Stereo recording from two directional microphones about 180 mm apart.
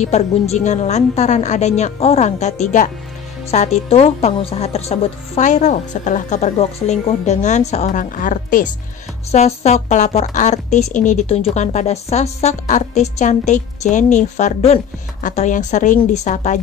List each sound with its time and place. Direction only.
0.0 s a woman's voice: 40° left (ahead or behind)